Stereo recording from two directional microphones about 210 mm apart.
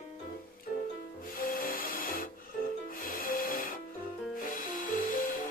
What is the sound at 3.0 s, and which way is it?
Music, 40° left (ahead or behind).